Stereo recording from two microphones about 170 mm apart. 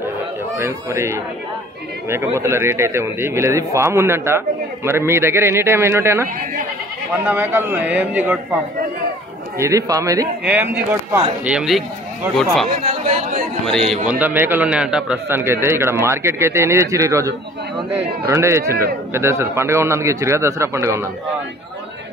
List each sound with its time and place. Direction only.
0.6 s a man's voice: 15° right (ahead or behind)
7.2 s a man's voice: 15° right (ahead or behind)
9.6 s speech: 20° right (ahead or behind)
10.4 s a man's voice: 10° right (ahead or behind)
12.8 s chatter: 40° right (ahead or behind)
13.7 s speech: 5° left (ahead or behind)
14.0 s a man's voice: 10° right (ahead or behind)